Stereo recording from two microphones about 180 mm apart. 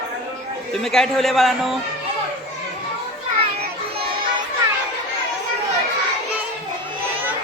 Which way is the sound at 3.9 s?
30° right (ahead or behind).